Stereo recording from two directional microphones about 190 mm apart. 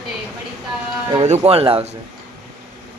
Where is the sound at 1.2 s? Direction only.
35° right (ahead or behind).